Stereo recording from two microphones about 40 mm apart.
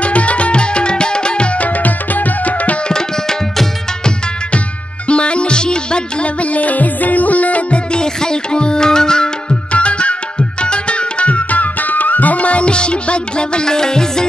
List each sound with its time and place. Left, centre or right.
0.0 s music: left
1.6 s music: left
2.9 s tabla: centre
5.0 s music: left
6.4 s music: left
7.9 s music: centre
9.7 s music: left